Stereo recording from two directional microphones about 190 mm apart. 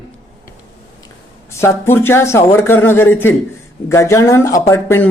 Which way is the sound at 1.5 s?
15° left (ahead or behind).